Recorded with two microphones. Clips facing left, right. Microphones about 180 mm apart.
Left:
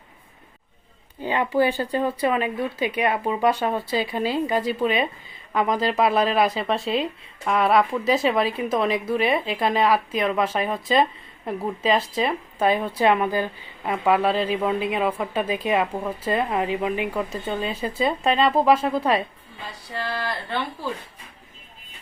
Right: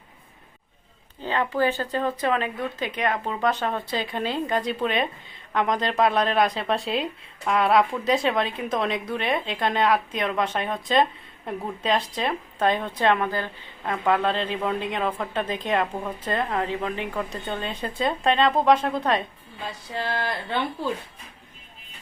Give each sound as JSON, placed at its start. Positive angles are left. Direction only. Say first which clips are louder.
{"t": 1.2, "sound": "a woman's voice", "louder": "left 3 dB", "side_deg": 10}
{"t": 19.9, "sound": "speech", "louder": "even", "side_deg": -20}